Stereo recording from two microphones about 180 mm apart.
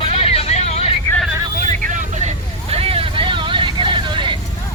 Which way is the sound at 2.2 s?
35° right (ahead or behind).